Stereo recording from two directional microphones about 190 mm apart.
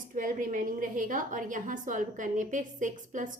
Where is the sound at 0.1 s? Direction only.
45° right (ahead or behind).